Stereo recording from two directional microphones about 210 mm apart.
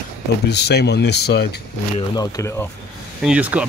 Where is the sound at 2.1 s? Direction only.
15° left (ahead or behind).